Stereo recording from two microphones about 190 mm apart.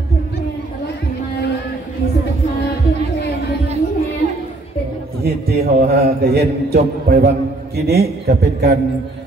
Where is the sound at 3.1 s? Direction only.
60° left (ahead or behind).